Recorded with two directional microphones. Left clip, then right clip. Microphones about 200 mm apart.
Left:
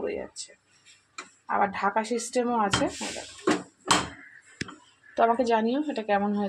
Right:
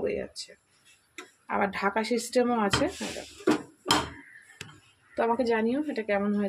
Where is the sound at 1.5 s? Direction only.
15° right (ahead or behind).